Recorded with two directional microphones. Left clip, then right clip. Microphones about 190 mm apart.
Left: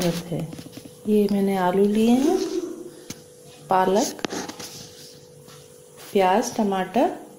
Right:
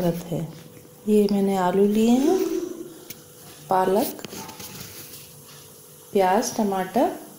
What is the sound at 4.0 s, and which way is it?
Speech, 15° left (ahead or behind).